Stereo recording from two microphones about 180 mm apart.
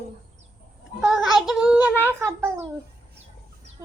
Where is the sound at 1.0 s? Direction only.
Centre (ahead or behind).